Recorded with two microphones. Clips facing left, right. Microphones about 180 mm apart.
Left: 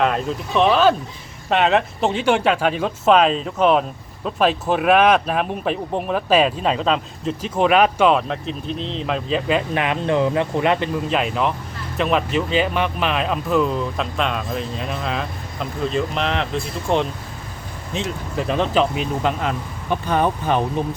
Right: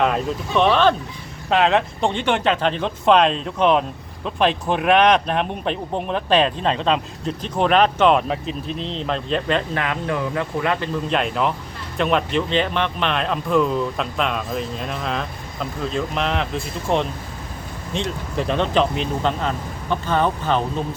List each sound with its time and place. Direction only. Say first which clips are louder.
0.0 s speech: even; centre (ahead or behind)
9.7 s speech: left 4 dB; 20° left (ahead or behind)
11.1 s speech: right 1 dB; centre (ahead or behind)